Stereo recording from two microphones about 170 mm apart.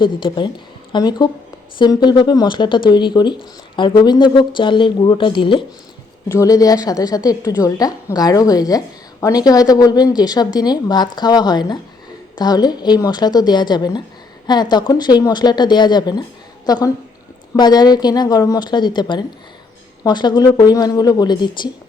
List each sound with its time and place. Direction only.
0.0 s speech: 30° left (ahead or behind)